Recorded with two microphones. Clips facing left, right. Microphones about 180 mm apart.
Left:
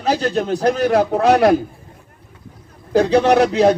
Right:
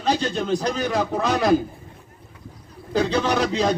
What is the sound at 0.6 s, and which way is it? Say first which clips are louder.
Speech: left 8 dB; 65° left (ahead or behind).